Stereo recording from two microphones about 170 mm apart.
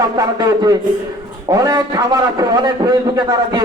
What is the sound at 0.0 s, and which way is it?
A man's voice, 20° right (ahead or behind).